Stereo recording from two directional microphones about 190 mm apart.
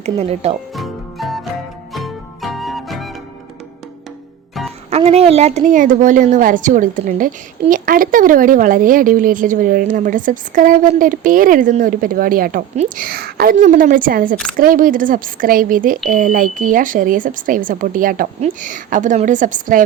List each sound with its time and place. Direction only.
0.0 s speech: 35° right (ahead or behind)
0.7 s music: centre (ahead or behind)
4.9 s a woman's voice: 35° right (ahead or behind)